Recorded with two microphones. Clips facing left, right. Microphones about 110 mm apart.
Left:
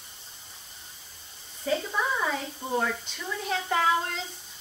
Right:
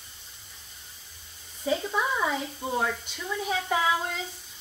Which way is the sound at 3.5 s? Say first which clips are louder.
Left 1 dB; 5° right (ahead or behind).